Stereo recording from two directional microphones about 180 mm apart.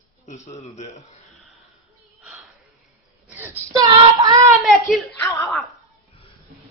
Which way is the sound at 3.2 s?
10° right (ahead or behind).